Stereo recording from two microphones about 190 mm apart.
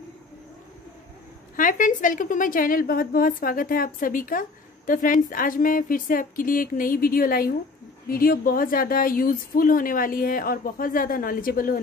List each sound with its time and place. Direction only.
1.6 s a woman's voice: 45° left (ahead or behind)